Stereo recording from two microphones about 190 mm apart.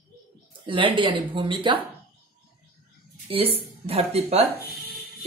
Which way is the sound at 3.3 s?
30° right (ahead or behind).